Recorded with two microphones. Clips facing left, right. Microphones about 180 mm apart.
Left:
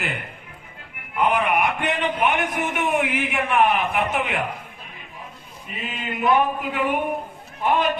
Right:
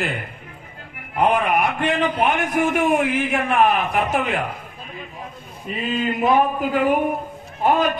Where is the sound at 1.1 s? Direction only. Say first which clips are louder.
Right 2 dB; 40° right (ahead or behind).